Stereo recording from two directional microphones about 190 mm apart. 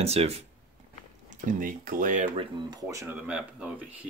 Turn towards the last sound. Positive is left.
turn(degrees=-5)  # may be behind; listen again after turning